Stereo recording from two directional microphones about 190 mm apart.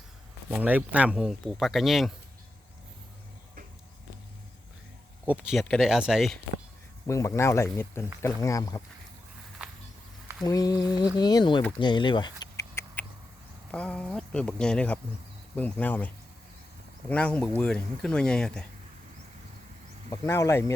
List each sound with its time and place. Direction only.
0.5 s speech: 5° right (ahead or behind)
5.2 s speech: 5° right (ahead or behind)
7.1 s speech: 15° left (ahead or behind)
10.4 s speech: 20° left (ahead or behind)
11.8 s rodents: 25° left (ahead or behind)
13.7 s speech: 5° left (ahead or behind)
20.1 s speech: 15° left (ahead or behind)